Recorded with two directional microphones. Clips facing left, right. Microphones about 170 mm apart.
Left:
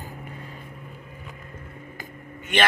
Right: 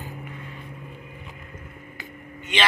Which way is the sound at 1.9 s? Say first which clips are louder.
Even; 50° left (ahead or behind).